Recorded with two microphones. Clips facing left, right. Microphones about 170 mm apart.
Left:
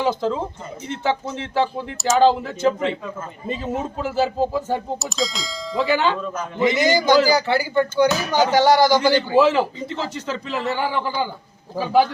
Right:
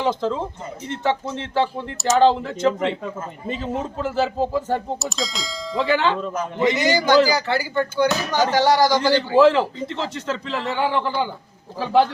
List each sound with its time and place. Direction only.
0.0 s speech: 5° left (ahead or behind)
1.6 s speech: centre (ahead or behind)
6.6 s a man's voice: 15° left (ahead or behind)